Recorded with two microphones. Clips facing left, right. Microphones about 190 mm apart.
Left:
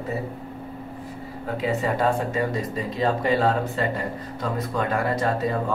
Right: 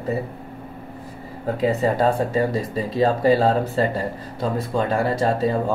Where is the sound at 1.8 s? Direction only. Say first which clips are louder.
Right 3 dB; 35° right (ahead or behind).